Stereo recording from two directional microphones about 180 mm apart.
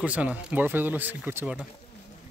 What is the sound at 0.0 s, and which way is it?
Speech, 5° right (ahead or behind).